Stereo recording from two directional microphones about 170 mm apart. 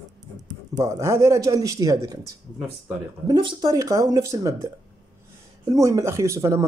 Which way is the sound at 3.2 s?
25° right (ahead or behind).